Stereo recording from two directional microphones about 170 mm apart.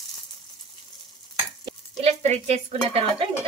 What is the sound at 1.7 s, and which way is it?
Speech, 40° right (ahead or behind).